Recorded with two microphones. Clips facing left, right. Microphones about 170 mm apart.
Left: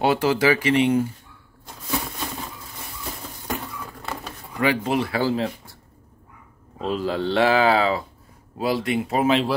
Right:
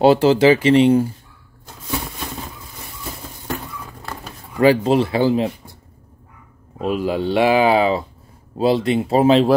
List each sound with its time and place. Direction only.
0.0 s speech: 30° right (ahead or behind)
4.6 s speech: 30° right (ahead or behind)
6.8 s speech: 15° right (ahead or behind); by 9.5 s 30° right (ahead or behind)